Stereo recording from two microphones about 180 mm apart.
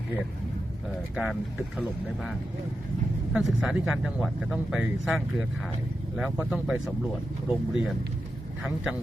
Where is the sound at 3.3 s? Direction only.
5° right (ahead or behind).